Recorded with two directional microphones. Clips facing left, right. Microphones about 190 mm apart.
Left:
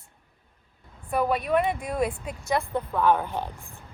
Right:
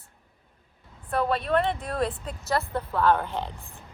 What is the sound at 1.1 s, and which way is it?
Speech, 10° left (ahead or behind).